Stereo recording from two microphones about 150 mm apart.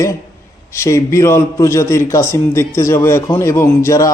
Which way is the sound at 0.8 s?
20° left (ahead or behind).